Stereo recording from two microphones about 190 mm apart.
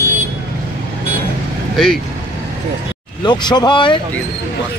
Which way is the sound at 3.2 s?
25° left (ahead or behind).